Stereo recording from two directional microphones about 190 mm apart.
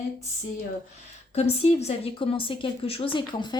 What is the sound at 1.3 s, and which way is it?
A woman's voice, 35° left (ahead or behind).